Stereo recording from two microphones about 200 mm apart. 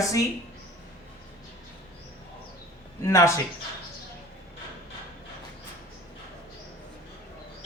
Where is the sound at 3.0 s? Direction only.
15° left (ahead or behind).